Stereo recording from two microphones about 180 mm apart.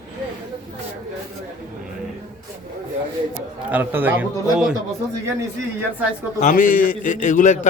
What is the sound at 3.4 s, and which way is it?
A man's voice, 10° right (ahead or behind).